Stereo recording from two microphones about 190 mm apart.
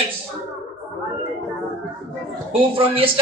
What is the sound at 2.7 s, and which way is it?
Speech, 30° right (ahead or behind).